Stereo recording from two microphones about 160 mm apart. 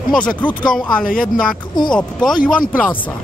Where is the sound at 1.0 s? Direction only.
60° left (ahead or behind).